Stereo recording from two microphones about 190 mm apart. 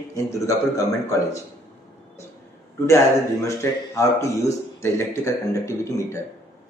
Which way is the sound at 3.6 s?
15° left (ahead or behind).